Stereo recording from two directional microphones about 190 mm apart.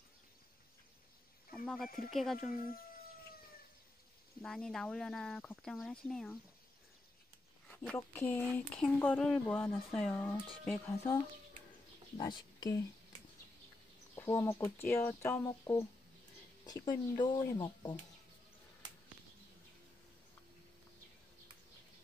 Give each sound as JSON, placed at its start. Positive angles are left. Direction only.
{"t": 1.5, "sound": "speech", "side_deg": 0}
{"t": 4.4, "sound": "speech", "side_deg": 5}
{"t": 7.8, "sound": "speech", "side_deg": 10}
{"t": 12.2, "sound": "speech", "side_deg": 25}
{"t": 14.1, "sound": "speech", "side_deg": 15}